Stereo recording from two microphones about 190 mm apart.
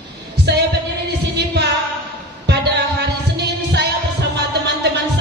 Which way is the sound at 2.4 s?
60° right (ahead or behind).